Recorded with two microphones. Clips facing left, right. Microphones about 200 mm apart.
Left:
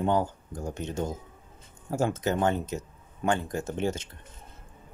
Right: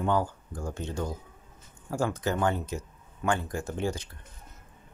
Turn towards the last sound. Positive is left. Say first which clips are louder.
# left 2 dB
turn(degrees=20)  # may be behind; listen again after turning